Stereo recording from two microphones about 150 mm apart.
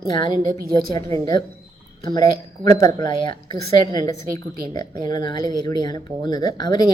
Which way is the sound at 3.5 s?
25° left (ahead or behind).